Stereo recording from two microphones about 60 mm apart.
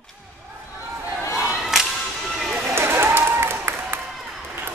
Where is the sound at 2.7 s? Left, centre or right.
Right.